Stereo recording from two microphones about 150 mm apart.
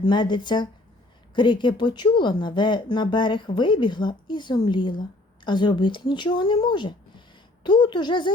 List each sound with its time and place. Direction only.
0.0 s speech: 30° left (ahead or behind)